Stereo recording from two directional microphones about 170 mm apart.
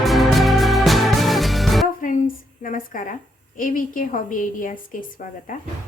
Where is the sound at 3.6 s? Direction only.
50° left (ahead or behind).